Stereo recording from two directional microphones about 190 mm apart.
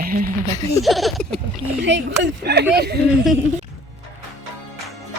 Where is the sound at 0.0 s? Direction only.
50° right (ahead or behind).